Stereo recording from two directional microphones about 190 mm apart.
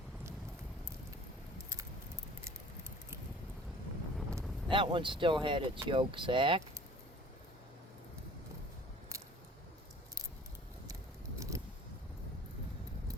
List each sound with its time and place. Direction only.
4.7 s speech: 25° right (ahead or behind)
11.3 s vehicle: 15° right (ahead or behind)